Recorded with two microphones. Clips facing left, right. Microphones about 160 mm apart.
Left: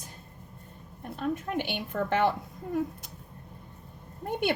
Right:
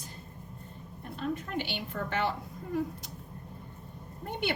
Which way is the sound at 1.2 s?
50° left (ahead or behind).